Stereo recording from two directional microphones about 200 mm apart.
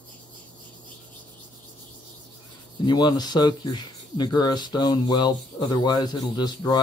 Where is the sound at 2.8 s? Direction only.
20° left (ahead or behind).